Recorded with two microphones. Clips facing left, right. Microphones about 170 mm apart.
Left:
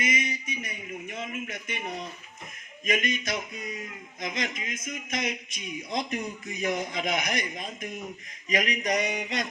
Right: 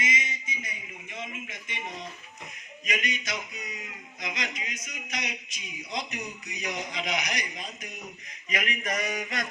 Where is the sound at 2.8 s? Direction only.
50° left (ahead or behind).